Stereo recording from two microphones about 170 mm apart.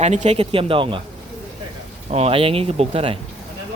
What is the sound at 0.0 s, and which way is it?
Speech, 40° right (ahead or behind).